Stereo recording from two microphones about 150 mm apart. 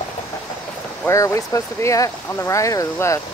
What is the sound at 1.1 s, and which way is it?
Speech, 20° left (ahead or behind).